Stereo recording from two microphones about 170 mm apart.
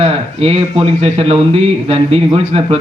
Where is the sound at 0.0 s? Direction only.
35° right (ahead or behind).